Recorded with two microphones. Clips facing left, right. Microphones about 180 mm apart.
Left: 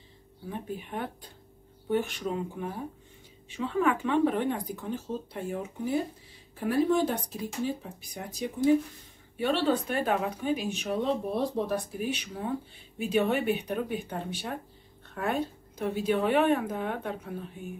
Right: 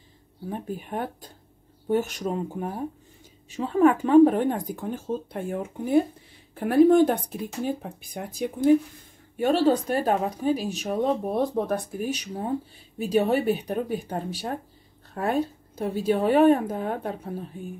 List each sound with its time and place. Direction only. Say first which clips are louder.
0.5 s speech: right 4 dB; 45° right (ahead or behind)
9.4 s speech: right 5 dB; 45° right (ahead or behind)